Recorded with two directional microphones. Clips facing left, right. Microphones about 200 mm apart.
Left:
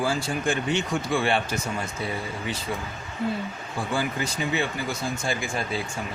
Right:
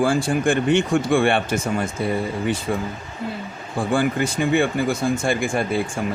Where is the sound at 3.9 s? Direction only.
55° right (ahead or behind).